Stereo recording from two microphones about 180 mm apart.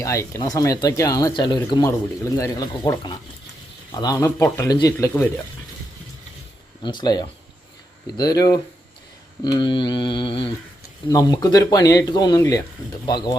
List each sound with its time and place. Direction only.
0.0 s speech: 15° left (ahead or behind)
6.8 s speech: 25° left (ahead or behind)